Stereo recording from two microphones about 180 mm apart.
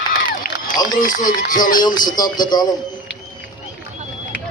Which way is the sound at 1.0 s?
45° left (ahead or behind).